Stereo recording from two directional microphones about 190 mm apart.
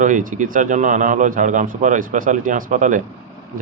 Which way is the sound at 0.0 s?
45° right (ahead or behind).